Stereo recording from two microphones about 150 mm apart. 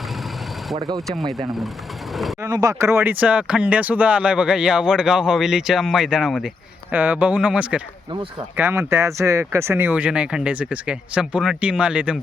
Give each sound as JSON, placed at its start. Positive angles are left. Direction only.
{"t": 0.8, "sound": "speech", "side_deg": -30}
{"t": 2.4, "sound": "speech", "side_deg": -25}